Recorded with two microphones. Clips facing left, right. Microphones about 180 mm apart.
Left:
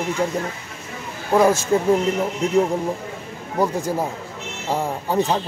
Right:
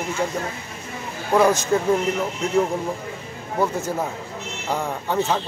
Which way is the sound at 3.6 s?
10° left (ahead or behind).